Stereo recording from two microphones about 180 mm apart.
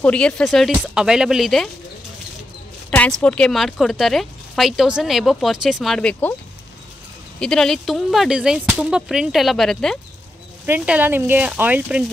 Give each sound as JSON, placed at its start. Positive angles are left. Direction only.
{"t": 0.0, "sound": "speech", "side_deg": 5}
{"t": 2.9, "sound": "speech", "side_deg": 5}
{"t": 7.3, "sound": "speech", "side_deg": 5}
{"t": 10.6, "sound": "speech", "side_deg": -10}